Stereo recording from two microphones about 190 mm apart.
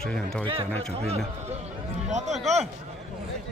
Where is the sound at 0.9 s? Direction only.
30° right (ahead or behind).